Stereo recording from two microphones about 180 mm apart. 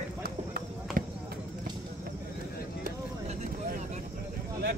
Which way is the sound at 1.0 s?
50° right (ahead or behind).